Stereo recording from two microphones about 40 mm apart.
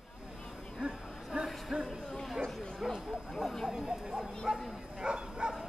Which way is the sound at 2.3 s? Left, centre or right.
Centre.